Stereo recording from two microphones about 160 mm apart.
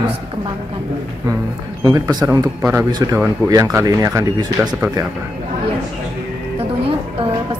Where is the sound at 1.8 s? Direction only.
25° right (ahead or behind).